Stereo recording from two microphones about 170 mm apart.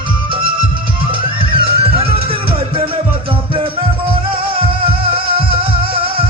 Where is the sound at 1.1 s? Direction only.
30° right (ahead or behind).